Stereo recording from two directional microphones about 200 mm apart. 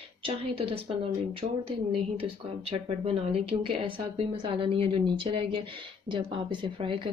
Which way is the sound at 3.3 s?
30° right (ahead or behind).